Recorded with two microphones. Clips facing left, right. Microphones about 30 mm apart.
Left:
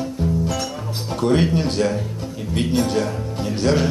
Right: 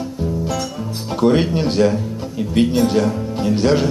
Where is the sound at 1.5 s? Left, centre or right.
Centre.